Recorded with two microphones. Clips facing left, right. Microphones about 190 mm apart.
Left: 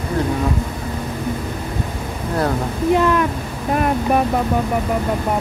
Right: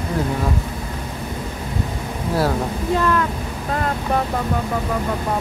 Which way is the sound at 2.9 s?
15° left (ahead or behind).